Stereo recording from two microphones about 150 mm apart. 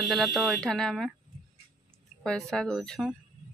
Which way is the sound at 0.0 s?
Centre (ahead or behind).